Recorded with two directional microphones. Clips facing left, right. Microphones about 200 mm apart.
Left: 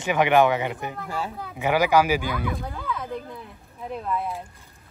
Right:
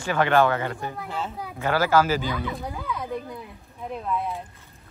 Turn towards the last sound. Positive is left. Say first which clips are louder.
# even
turn(degrees=0)  # may be behind; listen again after turning